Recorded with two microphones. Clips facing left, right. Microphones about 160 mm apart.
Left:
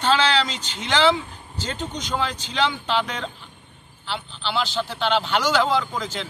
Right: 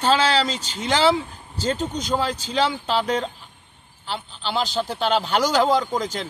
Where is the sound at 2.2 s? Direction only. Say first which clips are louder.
Right 1 dB; 40° right (ahead or behind).